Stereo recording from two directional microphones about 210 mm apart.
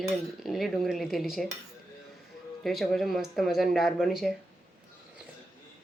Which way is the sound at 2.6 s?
Centre (ahead or behind).